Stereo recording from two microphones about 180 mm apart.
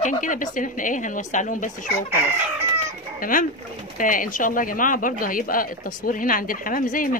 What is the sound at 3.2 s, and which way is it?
Speech, 50° left (ahead or behind).